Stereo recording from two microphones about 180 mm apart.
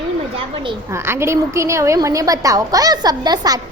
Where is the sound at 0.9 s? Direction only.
15° right (ahead or behind).